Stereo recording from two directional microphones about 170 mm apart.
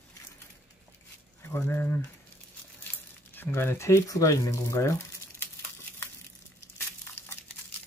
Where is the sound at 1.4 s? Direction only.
15° left (ahead or behind).